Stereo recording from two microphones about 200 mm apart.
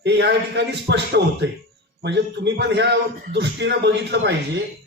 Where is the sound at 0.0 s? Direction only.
60° right (ahead or behind).